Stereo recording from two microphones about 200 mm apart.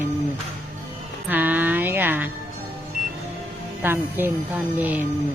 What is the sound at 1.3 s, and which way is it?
A woman's voice, 10° right (ahead or behind).